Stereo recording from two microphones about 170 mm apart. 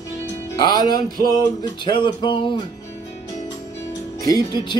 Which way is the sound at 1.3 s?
25° left (ahead or behind).